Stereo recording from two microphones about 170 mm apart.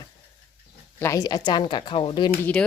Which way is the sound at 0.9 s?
15° left (ahead or behind).